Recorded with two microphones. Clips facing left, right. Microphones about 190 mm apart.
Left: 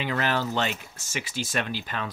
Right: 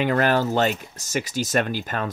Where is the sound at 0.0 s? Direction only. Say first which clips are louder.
Right 7 dB; 50° right (ahead or behind).